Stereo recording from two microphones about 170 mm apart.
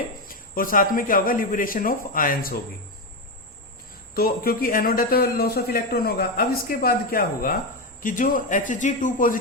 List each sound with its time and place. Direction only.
0.3 s a man's voice: 55° left (ahead or behind)
4.1 s a man's voice: 60° left (ahead or behind)